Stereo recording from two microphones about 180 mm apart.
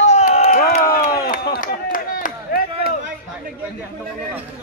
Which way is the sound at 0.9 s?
55° left (ahead or behind).